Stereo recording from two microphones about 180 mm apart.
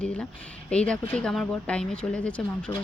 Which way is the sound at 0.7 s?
5° left (ahead or behind).